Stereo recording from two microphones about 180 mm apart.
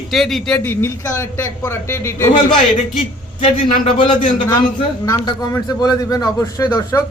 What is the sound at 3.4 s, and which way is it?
A man's voice, 30° left (ahead or behind).